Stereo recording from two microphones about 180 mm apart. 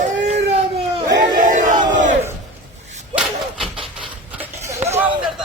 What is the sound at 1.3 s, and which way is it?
Battle cry, 45° right (ahead or behind).